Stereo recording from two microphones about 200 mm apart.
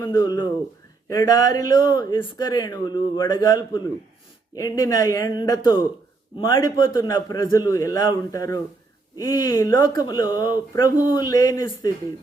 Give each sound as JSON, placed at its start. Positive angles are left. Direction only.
{"t": 0.0, "sound": "a man's voice", "side_deg": 20}